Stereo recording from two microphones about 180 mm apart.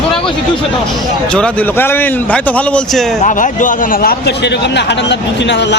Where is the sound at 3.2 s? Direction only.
45° left (ahead or behind); by 5.8 s 75° left (ahead or behind).